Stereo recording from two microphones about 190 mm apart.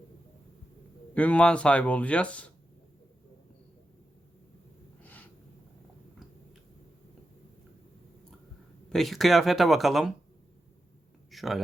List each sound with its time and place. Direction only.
1.1 s speech: 5° left (ahead or behind)
5.0 s snort: 10° left (ahead or behind)
8.9 s speech: centre (ahead or behind)
11.3 s speech: centre (ahead or behind)